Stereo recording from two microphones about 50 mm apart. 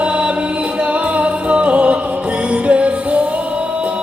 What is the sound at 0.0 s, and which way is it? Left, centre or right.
Music, right.